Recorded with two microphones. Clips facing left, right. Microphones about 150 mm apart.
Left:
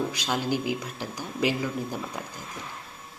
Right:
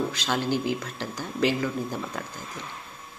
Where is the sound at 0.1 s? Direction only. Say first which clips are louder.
Right 1 dB; 10° left (ahead or behind).